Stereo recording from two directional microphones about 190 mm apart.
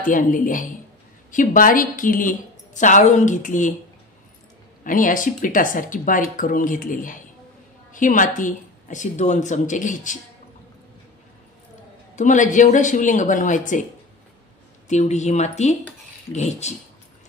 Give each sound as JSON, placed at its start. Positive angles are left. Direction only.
{"t": 0.0, "sound": "a woman's voice", "side_deg": 45}
{"t": 4.8, "sound": "a woman's voice", "side_deg": 45}
{"t": 12.2, "sound": "speech", "side_deg": 40}
{"t": 14.9, "sound": "speech", "side_deg": 40}